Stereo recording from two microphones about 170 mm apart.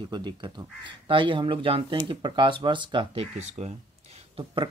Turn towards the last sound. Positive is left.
turn(degrees=-35)  # may be behind; listen again after turning